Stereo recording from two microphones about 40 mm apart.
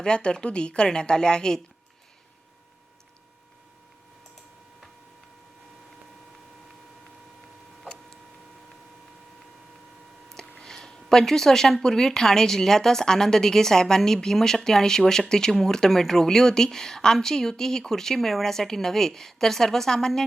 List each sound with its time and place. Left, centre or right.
0.0 s a woman's voice: left
10.2 s a sound: centre
10.6 s speech: centre